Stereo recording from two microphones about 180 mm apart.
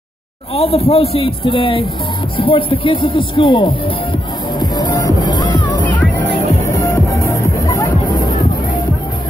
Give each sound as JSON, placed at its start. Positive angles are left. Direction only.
{"t": 0.6, "sound": "a man's voice", "side_deg": 35}
{"t": 4.6, "sound": "music", "side_deg": 25}